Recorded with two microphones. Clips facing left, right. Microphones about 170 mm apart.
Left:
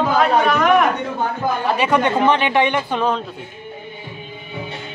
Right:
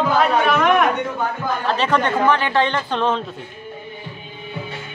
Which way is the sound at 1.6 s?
10° left (ahead or behind).